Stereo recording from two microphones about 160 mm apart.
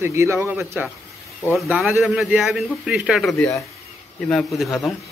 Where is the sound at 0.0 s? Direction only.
15° right (ahead or behind).